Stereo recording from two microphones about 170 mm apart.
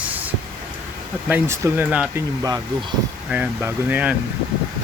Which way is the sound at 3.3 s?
10° right (ahead or behind).